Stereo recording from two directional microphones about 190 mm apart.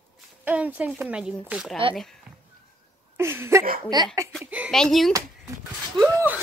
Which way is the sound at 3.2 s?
10° right (ahead or behind).